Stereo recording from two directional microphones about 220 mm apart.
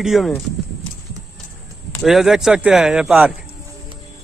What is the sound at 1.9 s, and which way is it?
A man's voice, centre (ahead or behind).